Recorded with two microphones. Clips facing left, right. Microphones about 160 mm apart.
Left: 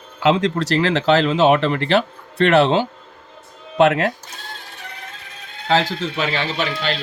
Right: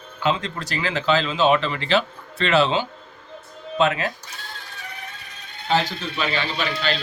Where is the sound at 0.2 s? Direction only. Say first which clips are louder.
Left 7 dB; 80° left.